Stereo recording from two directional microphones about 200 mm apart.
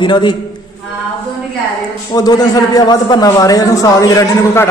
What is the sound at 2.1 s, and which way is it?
A man's voice, 20° left (ahead or behind).